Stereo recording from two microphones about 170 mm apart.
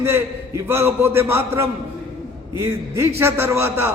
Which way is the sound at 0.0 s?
15° right (ahead or behind).